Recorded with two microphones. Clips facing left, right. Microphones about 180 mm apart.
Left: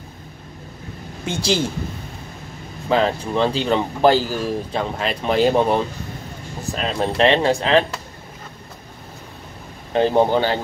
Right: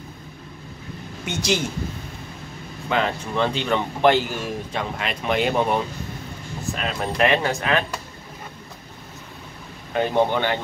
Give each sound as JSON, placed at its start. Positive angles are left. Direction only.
{"t": 1.2, "sound": "speech", "side_deg": 30}
{"t": 2.9, "sound": "speech", "side_deg": 35}
{"t": 9.9, "sound": "speech", "side_deg": 30}